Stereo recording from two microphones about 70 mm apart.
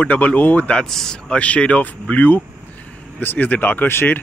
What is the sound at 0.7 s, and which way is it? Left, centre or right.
Speech, centre.